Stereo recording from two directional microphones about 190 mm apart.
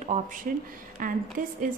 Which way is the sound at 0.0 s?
40° right (ahead or behind).